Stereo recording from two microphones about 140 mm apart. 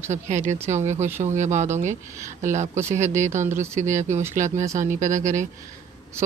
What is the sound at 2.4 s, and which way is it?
Speech, 55° right (ahead or behind).